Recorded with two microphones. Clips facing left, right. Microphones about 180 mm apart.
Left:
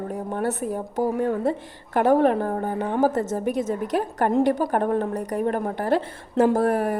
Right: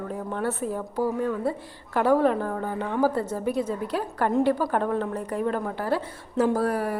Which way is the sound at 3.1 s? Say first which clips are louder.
Left 3 dB; 45° left (ahead or behind).